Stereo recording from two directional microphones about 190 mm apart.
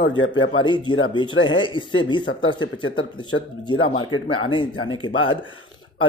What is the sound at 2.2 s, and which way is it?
Speech, 90° left.